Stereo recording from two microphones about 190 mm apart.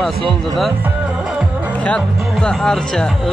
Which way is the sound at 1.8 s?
5° left (ahead or behind).